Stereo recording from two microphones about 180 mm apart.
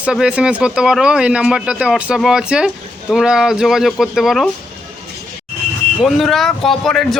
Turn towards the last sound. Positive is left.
turn(degrees=0)  # may be behind; listen again after turning